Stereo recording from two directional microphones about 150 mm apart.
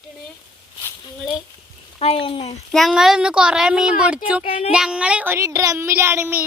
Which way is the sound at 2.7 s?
Centre (ahead or behind).